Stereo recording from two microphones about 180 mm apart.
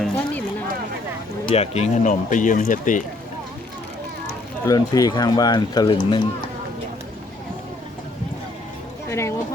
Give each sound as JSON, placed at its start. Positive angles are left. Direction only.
{"t": 1.5, "sound": "speech", "side_deg": 35}
{"t": 4.6, "sound": "speech", "side_deg": 20}
{"t": 9.0, "sound": "a sound", "side_deg": 15}